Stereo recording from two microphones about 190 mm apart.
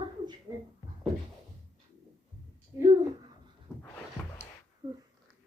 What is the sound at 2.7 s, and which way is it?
Speech, 20° right (ahead or behind).